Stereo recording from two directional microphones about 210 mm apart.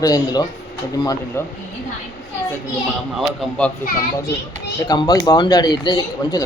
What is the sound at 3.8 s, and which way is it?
Speech, 50° left (ahead or behind).